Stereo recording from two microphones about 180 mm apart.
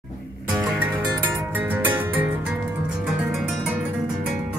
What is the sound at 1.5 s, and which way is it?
Music, 10° right (ahead or behind).